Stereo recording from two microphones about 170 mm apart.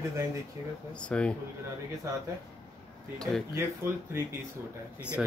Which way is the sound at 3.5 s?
15° right (ahead or behind).